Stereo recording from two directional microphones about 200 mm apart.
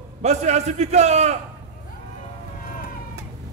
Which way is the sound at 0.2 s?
35° right (ahead or behind).